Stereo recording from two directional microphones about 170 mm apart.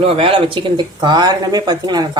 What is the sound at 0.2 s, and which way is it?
Speech, 35° right (ahead or behind).